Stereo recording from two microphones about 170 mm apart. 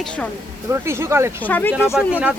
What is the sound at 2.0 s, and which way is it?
Speech, 5° right (ahead or behind).